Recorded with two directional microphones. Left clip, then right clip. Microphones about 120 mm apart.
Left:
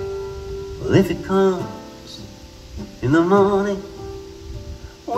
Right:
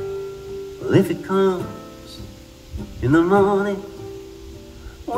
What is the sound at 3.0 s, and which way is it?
Music, 20° left (ahead or behind).